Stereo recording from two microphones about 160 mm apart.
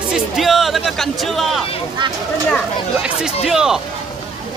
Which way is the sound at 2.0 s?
30° right (ahead or behind).